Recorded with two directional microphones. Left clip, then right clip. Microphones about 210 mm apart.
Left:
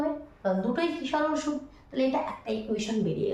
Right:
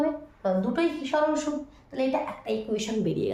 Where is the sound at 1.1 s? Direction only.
25° right (ahead or behind).